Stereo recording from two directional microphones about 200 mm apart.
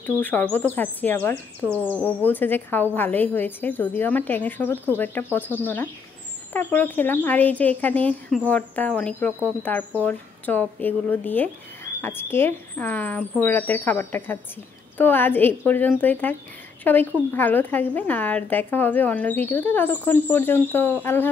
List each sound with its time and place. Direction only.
0.0 s speech: 10° left (ahead or behind)